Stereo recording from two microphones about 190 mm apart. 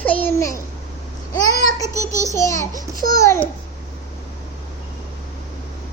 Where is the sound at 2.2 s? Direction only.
15° left (ahead or behind).